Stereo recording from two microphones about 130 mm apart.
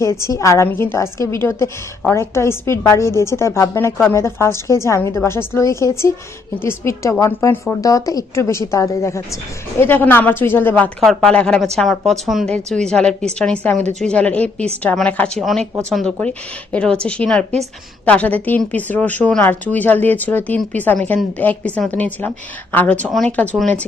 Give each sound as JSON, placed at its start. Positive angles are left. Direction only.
{"t": 0.0, "sound": "a woman's voice", "side_deg": 20}
{"t": 11.0, "sound": "a woman's voice", "side_deg": 0}